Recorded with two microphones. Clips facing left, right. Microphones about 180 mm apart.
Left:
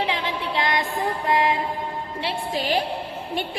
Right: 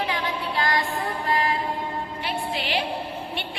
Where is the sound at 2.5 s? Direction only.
45° left (ahead or behind).